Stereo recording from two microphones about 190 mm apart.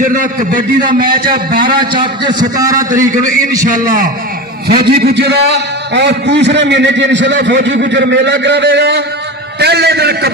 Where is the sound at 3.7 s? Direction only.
50° right (ahead or behind).